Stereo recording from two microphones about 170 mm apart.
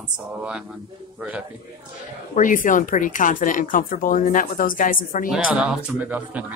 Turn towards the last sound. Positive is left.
turn(degrees=-10)  # may be behind; listen again after turning